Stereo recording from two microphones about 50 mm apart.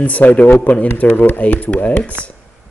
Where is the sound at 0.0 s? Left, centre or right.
Left.